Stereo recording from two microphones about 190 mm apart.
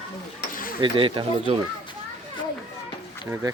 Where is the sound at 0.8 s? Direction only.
25° right (ahead or behind).